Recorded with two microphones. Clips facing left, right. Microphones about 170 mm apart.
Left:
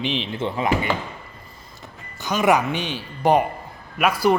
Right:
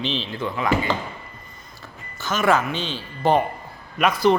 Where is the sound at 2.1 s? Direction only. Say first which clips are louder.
Left 1 dB; 15° left (ahead or behind).